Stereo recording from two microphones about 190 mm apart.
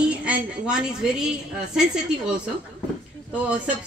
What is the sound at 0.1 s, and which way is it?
A woman's voice, 5° right (ahead or behind).